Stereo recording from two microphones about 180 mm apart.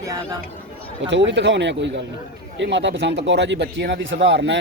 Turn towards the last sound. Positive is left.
turn(degrees=-80)